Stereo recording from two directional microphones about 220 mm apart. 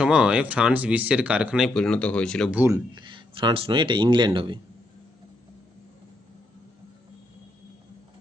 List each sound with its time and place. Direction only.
0.0 s speech: 5° right (ahead or behind)
2.6 s speech: 15° right (ahead or behind)